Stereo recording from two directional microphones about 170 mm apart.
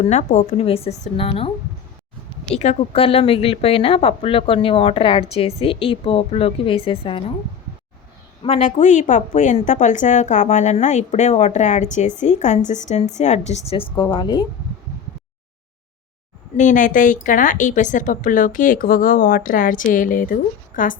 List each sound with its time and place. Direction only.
0.0 s speech: 40° left (ahead or behind)
2.6 s speech: 35° left (ahead or behind)
8.4 s a woman's voice: 40° left (ahead or behind); by 14.4 s 25° left (ahead or behind)
16.6 s a woman's voice: 50° left (ahead or behind)